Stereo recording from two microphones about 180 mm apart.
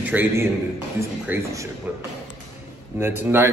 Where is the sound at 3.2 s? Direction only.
15° right (ahead or behind).